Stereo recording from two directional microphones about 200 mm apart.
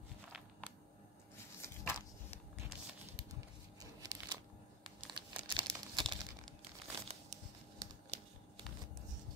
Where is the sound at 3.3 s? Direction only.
15° right (ahead or behind).